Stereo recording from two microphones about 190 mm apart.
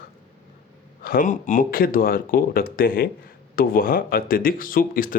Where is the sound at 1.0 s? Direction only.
45° left (ahead or behind).